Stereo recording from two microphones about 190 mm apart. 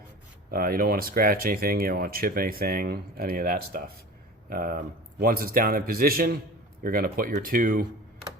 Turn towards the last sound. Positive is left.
turn(degrees=-45)  # may be behind; listen again after turning